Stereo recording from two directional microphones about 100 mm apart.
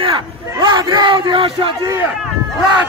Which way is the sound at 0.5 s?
45° right (ahead or behind).